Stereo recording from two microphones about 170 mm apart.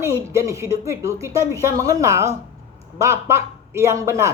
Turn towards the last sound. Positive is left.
turn(degrees=-15)  # may be behind; listen again after turning